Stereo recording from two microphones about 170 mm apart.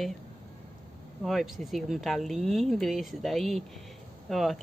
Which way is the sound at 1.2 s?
Centre (ahead or behind).